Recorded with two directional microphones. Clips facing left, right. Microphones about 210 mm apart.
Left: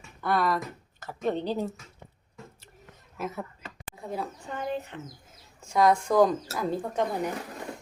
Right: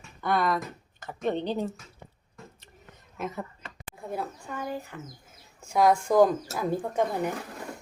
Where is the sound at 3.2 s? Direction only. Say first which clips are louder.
Even; 5° left (ahead or behind).